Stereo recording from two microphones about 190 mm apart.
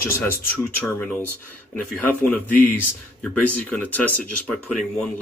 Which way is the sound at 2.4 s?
10° left (ahead or behind).